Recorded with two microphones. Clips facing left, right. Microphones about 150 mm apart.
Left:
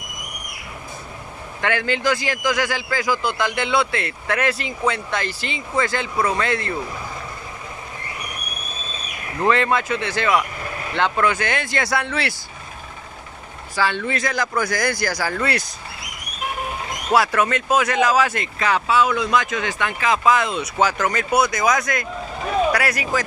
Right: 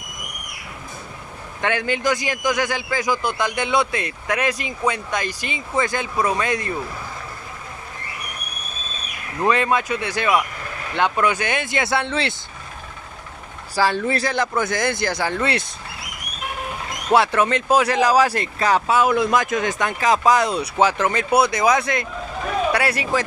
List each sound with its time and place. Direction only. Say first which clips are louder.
1.6 s a man's voice: even; 20° right (ahead or behind)
9.4 s a man's voice: even; 15° right (ahead or behind)
13.7 s speech: right 3 dB; 40° right (ahead or behind)
17.1 s speech: right 1 dB; 25° right (ahead or behind)